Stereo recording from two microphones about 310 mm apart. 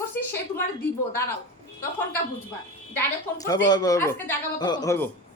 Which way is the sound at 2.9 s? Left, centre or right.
Centre.